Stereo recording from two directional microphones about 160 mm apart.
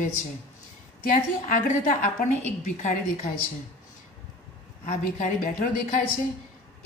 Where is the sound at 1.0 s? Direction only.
55° left (ahead or behind).